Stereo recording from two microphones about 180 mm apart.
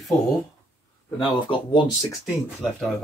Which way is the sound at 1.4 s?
25° left (ahead or behind).